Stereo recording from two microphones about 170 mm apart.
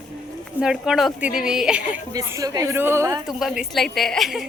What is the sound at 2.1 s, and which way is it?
A woman's voice, 20° right (ahead or behind).